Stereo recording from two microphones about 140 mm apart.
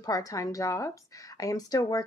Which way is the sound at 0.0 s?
25° left (ahead or behind).